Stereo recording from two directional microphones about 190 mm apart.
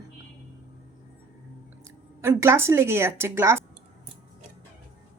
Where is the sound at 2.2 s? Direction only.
15° right (ahead or behind).